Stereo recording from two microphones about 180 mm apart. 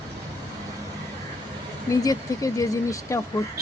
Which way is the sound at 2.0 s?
20° left (ahead or behind).